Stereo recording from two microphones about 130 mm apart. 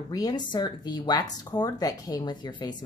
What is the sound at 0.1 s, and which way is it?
A woman's voice, 30° left (ahead or behind).